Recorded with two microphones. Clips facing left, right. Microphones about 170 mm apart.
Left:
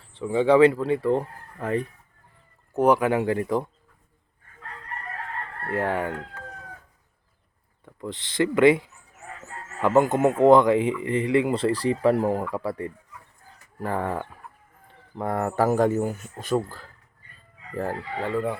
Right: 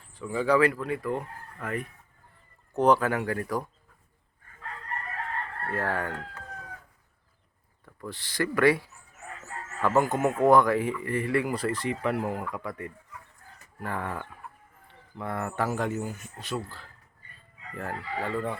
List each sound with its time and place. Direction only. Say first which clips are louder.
0.1 s speech: left 6 dB; 25° left (ahead or behind)
2.7 s speech: left 3 dB; 10° left (ahead or behind)
5.7 s speech: left 5 dB; 20° left (ahead or behind)
7.9 s a man's voice: left 5 dB; 20° left (ahead or behind); by 16.8 s 45° left (ahead or behind)
18.2 s speech: left 4 dB; 15° left (ahead or behind)